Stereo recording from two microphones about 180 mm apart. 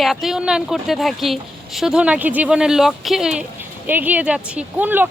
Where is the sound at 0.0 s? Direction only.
Centre (ahead or behind).